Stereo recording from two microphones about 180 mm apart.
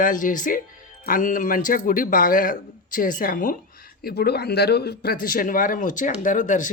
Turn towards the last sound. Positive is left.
turn(degrees=45)  # may be behind; listen again after turning